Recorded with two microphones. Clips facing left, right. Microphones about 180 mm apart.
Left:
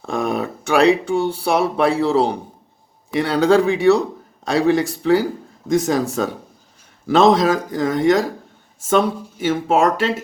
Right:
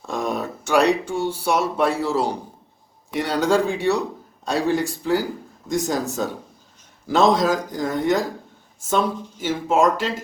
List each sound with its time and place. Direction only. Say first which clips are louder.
0.0 s speech: left 4 dB; 60° left (ahead or behind); by 8.3 s 75° left (ahead or behind)
9.5 s speech: left 2 dB; 65° left (ahead or behind)